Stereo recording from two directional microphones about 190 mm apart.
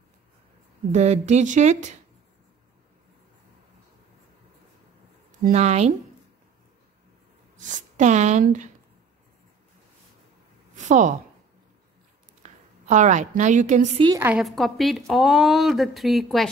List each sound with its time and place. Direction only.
0.9 s a woman's voice: 35° right (ahead or behind)
5.4 s a woman's voice: 35° right (ahead or behind)
7.5 s speech: 40° right (ahead or behind)
10.8 s a woman's voice: 40° right (ahead or behind)
12.4 s a sound: 40° right (ahead or behind)
12.8 s a woman's voice: 40° right (ahead or behind)
13.9 s a woman's voice: 20° right (ahead or behind)
14.3 s speech: centre (ahead or behind)